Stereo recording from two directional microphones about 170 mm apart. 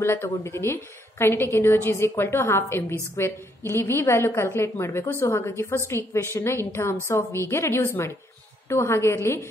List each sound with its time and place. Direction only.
0.0 s a woman's voice: 15° left (ahead or behind)